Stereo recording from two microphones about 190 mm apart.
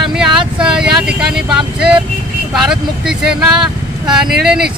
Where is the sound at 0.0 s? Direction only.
Centre (ahead or behind).